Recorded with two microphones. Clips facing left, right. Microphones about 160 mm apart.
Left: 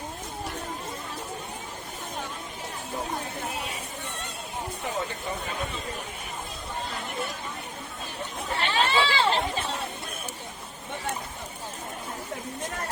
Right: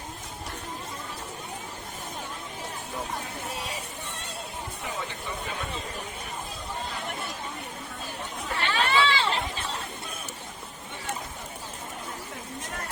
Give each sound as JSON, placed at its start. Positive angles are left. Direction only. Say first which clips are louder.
{"t": 8.5, "sound": "chatter", "louder": "even", "side_deg": 25}